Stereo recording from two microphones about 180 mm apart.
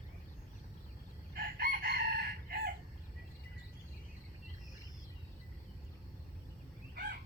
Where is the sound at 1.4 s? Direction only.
55° right (ahead or behind).